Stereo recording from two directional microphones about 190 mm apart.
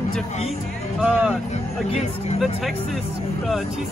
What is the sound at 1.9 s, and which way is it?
Speech, 35° left (ahead or behind).